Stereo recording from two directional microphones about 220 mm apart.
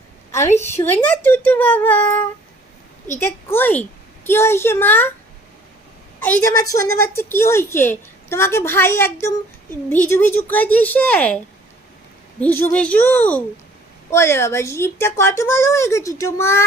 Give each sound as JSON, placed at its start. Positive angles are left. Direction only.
{"t": 0.4, "sound": "a woman's voice", "side_deg": 30}
{"t": 0.7, "sound": "a woman's voice", "side_deg": 10}
{"t": 3.1, "sound": "a woman's voice", "side_deg": 10}
{"t": 6.1, "sound": "a woman's voice", "side_deg": 10}
{"t": 12.4, "sound": "a woman's voice", "side_deg": 10}